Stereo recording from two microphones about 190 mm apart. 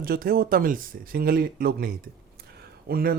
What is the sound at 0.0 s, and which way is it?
Speech, 50° right (ahead or behind).